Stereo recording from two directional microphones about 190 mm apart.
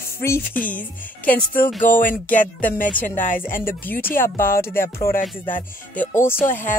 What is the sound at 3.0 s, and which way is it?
Speech, 45° left (ahead or behind).